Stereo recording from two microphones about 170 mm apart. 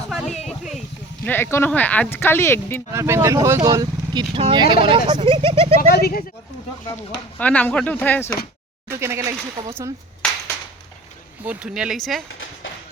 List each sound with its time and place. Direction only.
0.1 s a sound: centre (ahead or behind)
1.2 s speech: 10° left (ahead or behind)
2.9 s speech: 15° right (ahead or behind); by 5.7 s 30° right (ahead or behind)
5.9 s speech: 65° left (ahead or behind)
7.3 s speech: 10° left (ahead or behind)
8.9 s speech: 15° right (ahead or behind)
11.4 s speech: 5° right (ahead or behind)